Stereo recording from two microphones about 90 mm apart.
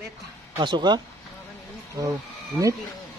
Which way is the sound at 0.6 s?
55° right (ahead or behind).